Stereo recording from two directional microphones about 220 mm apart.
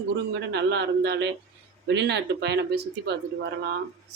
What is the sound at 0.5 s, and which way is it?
Speech, 50° right (ahead or behind).